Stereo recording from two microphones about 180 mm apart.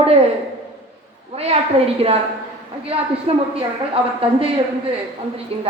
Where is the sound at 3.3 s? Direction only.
35° right (ahead or behind).